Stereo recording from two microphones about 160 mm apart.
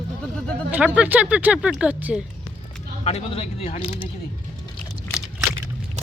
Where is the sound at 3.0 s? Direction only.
40° left (ahead or behind).